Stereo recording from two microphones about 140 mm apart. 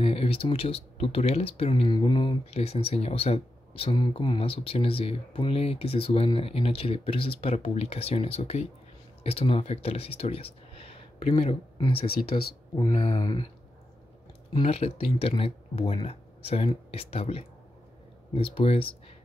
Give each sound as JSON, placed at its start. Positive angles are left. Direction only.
{"t": 0.0, "sound": "speech", "side_deg": 45}
{"t": 2.5, "sound": "speech", "side_deg": 45}
{"t": 12.7, "sound": "speech", "side_deg": 35}
{"t": 14.5, "sound": "speech", "side_deg": 40}